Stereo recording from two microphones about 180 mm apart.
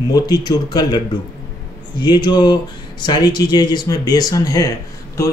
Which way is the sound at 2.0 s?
25° left (ahead or behind).